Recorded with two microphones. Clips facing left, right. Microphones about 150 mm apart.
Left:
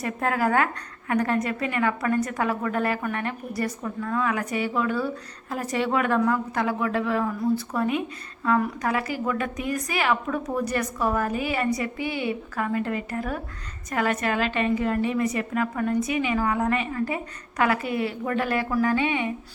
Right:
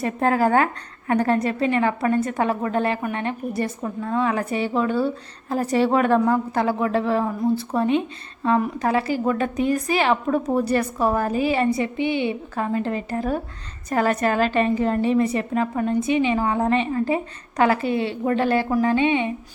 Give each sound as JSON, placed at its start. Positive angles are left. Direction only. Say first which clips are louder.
{"t": 0.0, "sound": "a woman's voice", "louder": "right 5 dB", "side_deg": -30}